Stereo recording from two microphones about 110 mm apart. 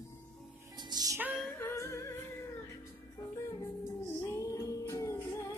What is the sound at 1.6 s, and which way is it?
Music, 25° left (ahead or behind).